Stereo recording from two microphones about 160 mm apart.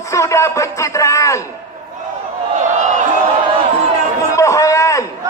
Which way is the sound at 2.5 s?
50° right (ahead or behind).